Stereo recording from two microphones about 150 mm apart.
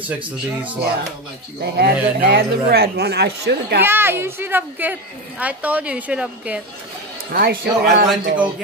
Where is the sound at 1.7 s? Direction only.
90° right.